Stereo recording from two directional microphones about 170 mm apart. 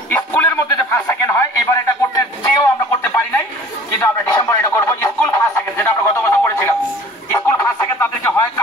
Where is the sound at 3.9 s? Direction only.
20° left (ahead or behind).